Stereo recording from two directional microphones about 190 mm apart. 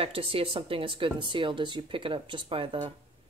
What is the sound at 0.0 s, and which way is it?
Speech, 30° right (ahead or behind).